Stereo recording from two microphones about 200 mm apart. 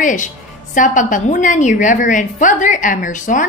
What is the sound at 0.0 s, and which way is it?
A woman's voice, 40° left (ahead or behind).